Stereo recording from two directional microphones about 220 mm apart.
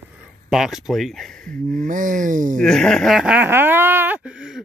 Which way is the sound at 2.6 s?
5° left (ahead or behind).